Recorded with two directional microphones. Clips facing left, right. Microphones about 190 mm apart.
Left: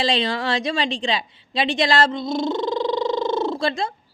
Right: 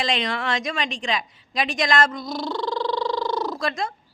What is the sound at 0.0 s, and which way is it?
A woman's voice, 30° left (ahead or behind).